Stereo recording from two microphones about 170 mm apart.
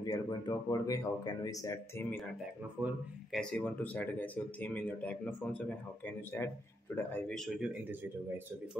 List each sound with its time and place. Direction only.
0.0 s speech: 20° left (ahead or behind)
2.8 s speech: 10° right (ahead or behind)
3.3 s speech: 5° left (ahead or behind)